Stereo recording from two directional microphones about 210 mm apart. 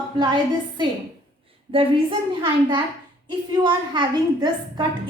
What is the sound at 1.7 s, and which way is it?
A woman's voice, 25° right (ahead or behind).